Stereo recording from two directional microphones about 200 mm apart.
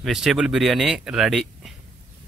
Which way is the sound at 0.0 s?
Centre (ahead or behind).